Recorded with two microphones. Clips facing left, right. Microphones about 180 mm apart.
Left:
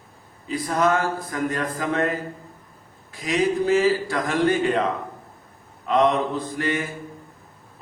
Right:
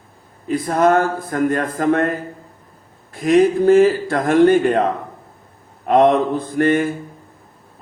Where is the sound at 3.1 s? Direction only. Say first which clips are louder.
Right 9 dB; 55° right (ahead or behind).